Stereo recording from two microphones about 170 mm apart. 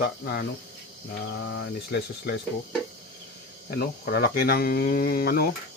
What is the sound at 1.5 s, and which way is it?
Speech, 85° left.